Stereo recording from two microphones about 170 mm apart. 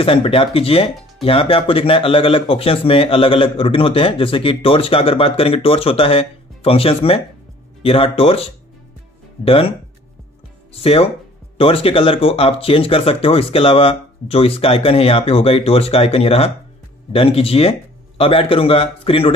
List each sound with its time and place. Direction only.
0.0 s speech: 30° left (ahead or behind)
10.8 s speech: 35° left (ahead or behind)